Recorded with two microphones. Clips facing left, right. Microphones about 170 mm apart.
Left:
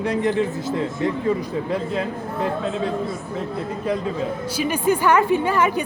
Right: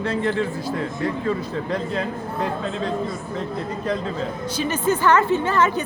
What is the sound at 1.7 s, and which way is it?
A woman's voice, 5° left (ahead or behind).